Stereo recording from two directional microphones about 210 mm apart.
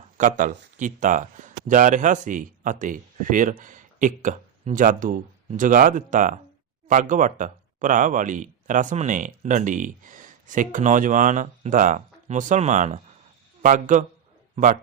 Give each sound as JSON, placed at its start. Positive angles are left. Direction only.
{"t": 0.2, "sound": "a man's voice", "side_deg": -40}